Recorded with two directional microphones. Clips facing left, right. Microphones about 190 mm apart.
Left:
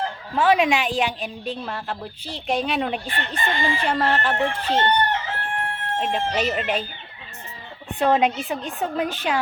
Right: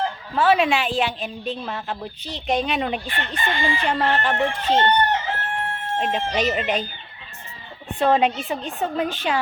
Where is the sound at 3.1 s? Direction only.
35° left (ahead or behind).